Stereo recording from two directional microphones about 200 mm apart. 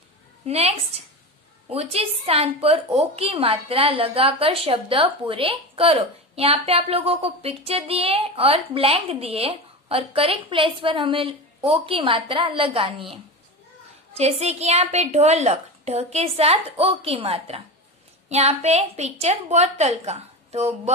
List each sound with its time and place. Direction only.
0.5 s a woman's voice: 30° right (ahead or behind)
14.1 s a woman's voice: 30° right (ahead or behind)